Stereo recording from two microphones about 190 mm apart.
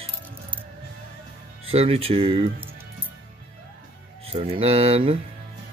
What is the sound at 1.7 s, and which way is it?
Speech, 30° right (ahead or behind).